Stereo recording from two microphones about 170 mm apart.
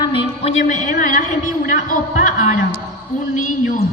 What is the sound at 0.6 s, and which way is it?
A man's voice, 45° left (ahead or behind).